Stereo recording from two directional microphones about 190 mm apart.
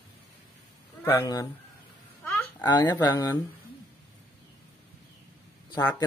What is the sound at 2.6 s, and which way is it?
Speech, 20° left (ahead or behind).